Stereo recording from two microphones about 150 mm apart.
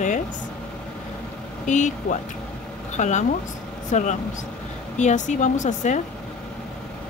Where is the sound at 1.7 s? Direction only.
55° left (ahead or behind).